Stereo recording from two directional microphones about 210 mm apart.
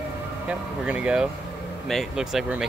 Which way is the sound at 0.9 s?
5° right (ahead or behind).